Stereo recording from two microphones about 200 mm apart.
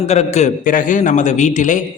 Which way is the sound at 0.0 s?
35° left (ahead or behind).